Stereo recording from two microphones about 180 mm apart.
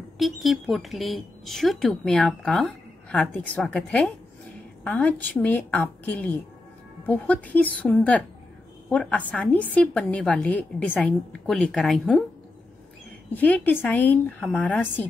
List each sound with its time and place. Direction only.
0.2 s a woman's voice: centre (ahead or behind)
13.3 s a woman's voice: 10° left (ahead or behind)